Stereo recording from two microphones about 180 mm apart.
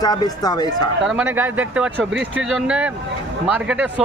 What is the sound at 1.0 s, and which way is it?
Speech, 10° right (ahead or behind).